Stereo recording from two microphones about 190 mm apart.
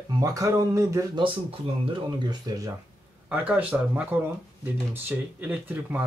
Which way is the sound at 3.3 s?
5° right (ahead or behind).